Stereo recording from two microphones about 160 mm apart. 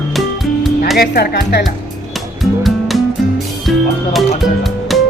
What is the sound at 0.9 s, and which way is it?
Speech, 75° left (ahead or behind).